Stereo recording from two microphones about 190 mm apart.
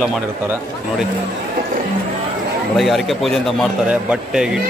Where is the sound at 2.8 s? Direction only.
Centre (ahead or behind).